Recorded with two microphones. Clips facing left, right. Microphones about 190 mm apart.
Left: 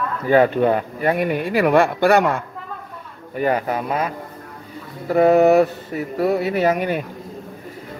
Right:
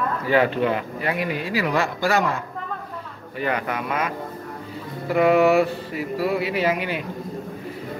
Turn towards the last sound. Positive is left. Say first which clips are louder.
# left 4 dB
turn(degrees=45)  # may be behind; listen again after turning